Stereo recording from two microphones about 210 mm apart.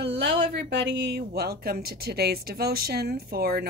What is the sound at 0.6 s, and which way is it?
Speech, 55° right (ahead or behind).